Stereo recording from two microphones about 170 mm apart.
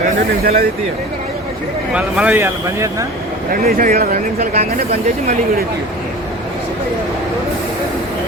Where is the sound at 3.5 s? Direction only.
55° right (ahead or behind).